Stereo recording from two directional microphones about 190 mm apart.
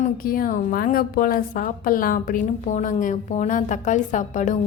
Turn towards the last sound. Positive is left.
turn(degrees=40)  # may be behind; listen again after turning